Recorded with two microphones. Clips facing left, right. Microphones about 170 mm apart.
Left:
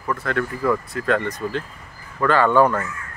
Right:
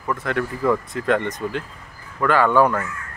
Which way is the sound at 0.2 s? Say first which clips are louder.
Right 1 dB; 15° right (ahead or behind).